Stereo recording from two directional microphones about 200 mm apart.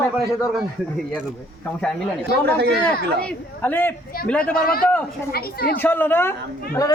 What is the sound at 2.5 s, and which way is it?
Speech, 55° right (ahead or behind).